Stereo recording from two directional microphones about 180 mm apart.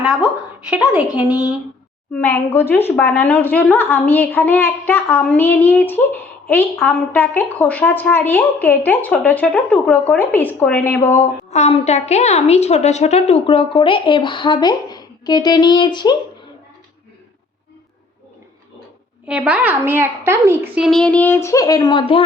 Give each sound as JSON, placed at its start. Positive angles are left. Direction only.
{"t": 0.0, "sound": "a woman's voice", "side_deg": -5}
{"t": 2.1, "sound": "a woman's voice", "side_deg": 10}
{"t": 11.5, "sound": "a woman's voice", "side_deg": 40}
{"t": 19.3, "sound": "a woman's voice", "side_deg": -5}
{"t": 20.8, "sound": "a woman's voice", "side_deg": 5}